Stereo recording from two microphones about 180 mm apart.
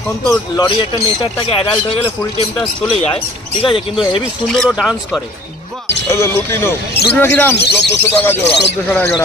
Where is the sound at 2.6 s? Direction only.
5° left (ahead or behind).